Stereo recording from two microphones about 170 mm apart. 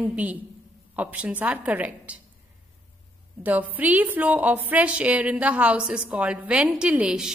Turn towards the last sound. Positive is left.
turn(degrees=-5)  # may be behind; listen again after turning